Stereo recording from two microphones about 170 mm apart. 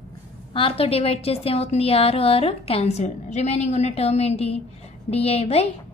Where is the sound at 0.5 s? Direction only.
30° left (ahead or behind).